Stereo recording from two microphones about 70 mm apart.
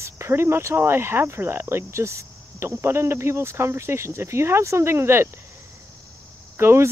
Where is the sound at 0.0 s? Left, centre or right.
Right.